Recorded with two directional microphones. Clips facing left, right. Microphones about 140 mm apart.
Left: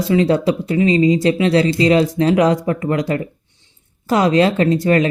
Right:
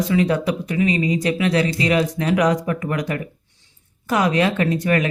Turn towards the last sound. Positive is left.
turn(degrees=30)  # may be behind; listen again after turning